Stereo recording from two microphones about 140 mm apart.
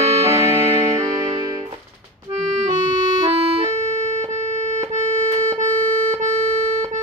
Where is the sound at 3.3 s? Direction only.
45° right (ahead or behind).